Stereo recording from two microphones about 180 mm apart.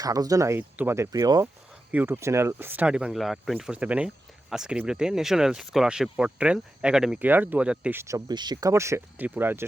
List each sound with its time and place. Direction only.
0.0 s speech: 20° right (ahead or behind)